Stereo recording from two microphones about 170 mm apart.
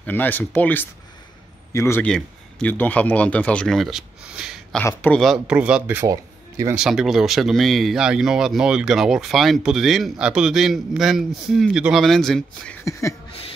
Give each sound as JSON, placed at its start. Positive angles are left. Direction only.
{"t": 0.0, "sound": "a man's voice", "side_deg": 10}
{"t": 6.7, "sound": "speech", "side_deg": -5}
{"t": 12.8, "sound": "a sound", "side_deg": 20}